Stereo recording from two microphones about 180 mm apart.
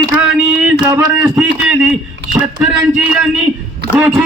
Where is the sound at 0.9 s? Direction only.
15° right (ahead or behind).